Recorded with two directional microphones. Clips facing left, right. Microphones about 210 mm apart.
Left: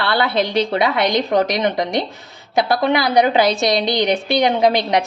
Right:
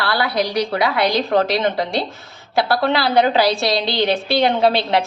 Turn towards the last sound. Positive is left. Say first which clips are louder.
# left 1 dB
turn(degrees=15)  # may be behind; listen again after turning